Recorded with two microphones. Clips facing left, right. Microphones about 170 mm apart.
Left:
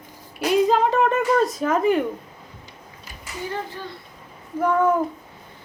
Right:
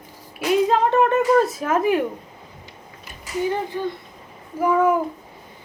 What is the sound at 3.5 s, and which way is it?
Speech, 15° right (ahead or behind).